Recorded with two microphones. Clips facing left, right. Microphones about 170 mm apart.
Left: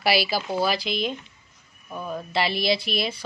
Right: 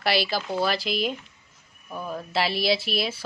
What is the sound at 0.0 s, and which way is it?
A woman's voice, 5° left (ahead or behind).